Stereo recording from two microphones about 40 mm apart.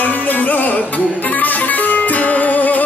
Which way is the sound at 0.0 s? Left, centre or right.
Left.